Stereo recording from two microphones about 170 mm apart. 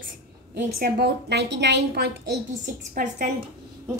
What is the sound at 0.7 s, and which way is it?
A woman's voice, 65° right (ahead or behind).